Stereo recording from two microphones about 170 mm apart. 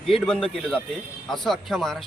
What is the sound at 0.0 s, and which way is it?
Speech, 5° left (ahead or behind).